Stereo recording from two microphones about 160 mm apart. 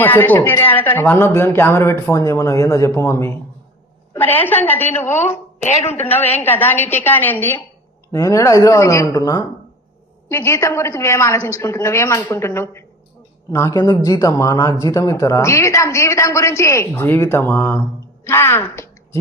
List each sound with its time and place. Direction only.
0.0 s speech: 10° left (ahead or behind)
5.6 s a woman's voice: 45° left (ahead or behind)
6.0 s speech: 10° left (ahead or behind)